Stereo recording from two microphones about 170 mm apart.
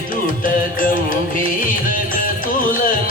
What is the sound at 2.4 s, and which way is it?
Music, 55° left (ahead or behind).